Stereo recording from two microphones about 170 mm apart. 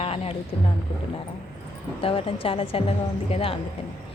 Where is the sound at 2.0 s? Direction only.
35° left (ahead or behind).